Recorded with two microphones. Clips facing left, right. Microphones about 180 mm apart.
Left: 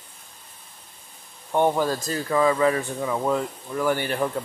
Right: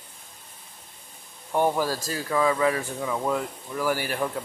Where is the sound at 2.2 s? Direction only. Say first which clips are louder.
Left 3 dB; 5° left (ahead or behind).